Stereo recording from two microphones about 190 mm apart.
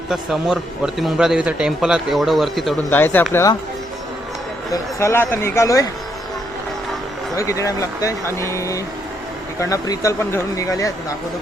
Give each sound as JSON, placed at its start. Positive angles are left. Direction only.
{"t": 0.1, "sound": "a man's voice", "side_deg": -5}
{"t": 4.7, "sound": "speech", "side_deg": 15}
{"t": 7.3, "sound": "speech", "side_deg": 15}